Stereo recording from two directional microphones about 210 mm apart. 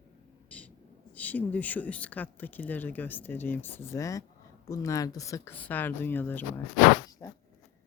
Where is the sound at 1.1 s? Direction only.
5° left (ahead or behind).